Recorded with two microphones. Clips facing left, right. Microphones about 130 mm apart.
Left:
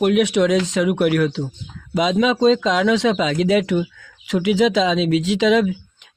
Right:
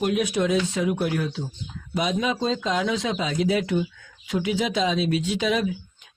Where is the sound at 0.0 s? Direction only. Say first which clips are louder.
Left 7 dB; 75° left (ahead or behind).